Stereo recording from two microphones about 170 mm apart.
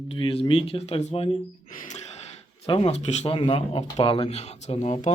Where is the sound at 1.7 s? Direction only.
50° left (ahead or behind).